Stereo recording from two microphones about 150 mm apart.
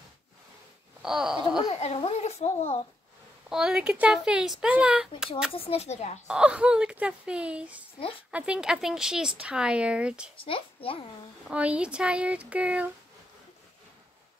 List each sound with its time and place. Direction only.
1.0 s speech: 5° right (ahead or behind)
1.7 s a child's voice: 45° left (ahead or behind)
3.4 s speech: 5° right (ahead or behind)
5.5 s speech: 40° left (ahead or behind)
6.2 s speech: 5° right (ahead or behind)
10.3 s a child's voice: 35° left (ahead or behind)
11.4 s speech: 10° right (ahead or behind)